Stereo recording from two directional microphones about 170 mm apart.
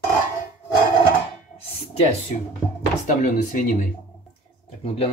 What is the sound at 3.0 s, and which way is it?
Speech, 45° left (ahead or behind).